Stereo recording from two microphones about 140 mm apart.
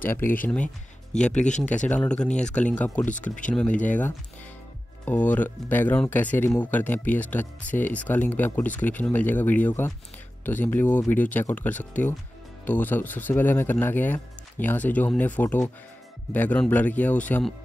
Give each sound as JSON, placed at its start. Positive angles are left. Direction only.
{"t": 0.0, "sound": "speech", "side_deg": 15}
{"t": 3.7, "sound": "speech", "side_deg": 65}
{"t": 5.0, "sound": "speech", "side_deg": 10}